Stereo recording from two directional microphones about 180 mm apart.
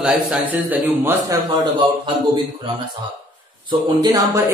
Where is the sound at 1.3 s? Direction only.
25° right (ahead or behind).